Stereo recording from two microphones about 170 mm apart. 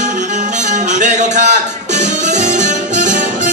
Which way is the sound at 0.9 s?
45° right (ahead or behind).